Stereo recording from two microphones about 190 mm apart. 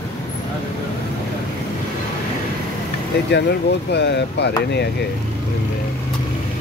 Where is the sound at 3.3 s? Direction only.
60° left (ahead or behind).